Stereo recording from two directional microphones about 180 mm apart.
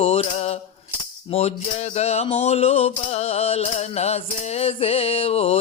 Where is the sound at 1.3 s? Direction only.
35° left (ahead or behind).